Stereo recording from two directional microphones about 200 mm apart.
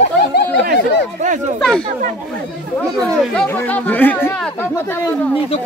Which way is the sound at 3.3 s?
5° left (ahead or behind).